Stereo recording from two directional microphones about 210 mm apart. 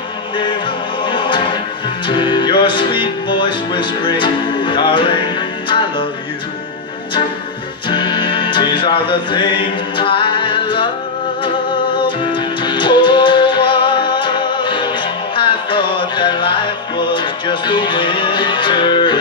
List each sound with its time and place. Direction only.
1.0 s music: 20° left (ahead or behind)
7.9 s music: 20° left (ahead or behind)
12.3 s music: 20° left (ahead or behind)